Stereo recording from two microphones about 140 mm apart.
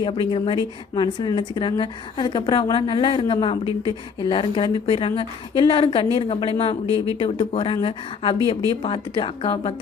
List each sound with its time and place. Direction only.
0.0 s a woman's voice: 35° left (ahead or behind)